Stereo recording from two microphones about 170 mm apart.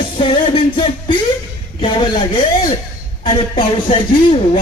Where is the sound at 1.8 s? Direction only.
30° left (ahead or behind).